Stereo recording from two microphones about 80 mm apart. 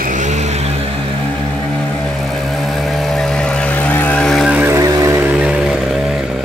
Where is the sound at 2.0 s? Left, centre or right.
Centre; by 4.2 s left.